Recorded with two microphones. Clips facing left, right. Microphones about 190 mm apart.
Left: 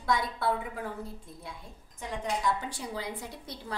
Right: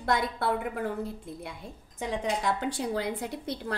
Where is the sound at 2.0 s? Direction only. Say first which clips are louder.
Right 3 dB; 90° right; by 3.7 s 65° right (ahead or behind).